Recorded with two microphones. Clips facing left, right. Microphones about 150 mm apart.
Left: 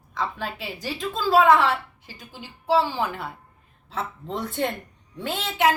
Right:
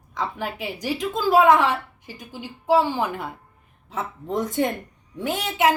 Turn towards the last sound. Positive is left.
turn(degrees=-15)  # may be behind; listen again after turning